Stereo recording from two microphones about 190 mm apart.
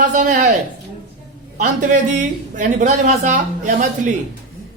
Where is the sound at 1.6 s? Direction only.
45° right (ahead or behind).